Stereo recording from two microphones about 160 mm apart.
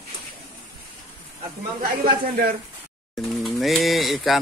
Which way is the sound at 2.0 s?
70° right (ahead or behind).